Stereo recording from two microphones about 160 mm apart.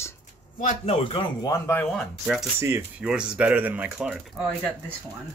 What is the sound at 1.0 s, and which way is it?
Speech, 30° left (ahead or behind).